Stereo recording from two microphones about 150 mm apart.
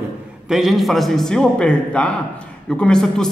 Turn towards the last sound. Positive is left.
turn(degrees=5)  # may be behind; listen again after turning